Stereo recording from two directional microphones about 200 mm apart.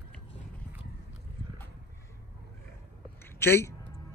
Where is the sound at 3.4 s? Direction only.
10° left (ahead or behind).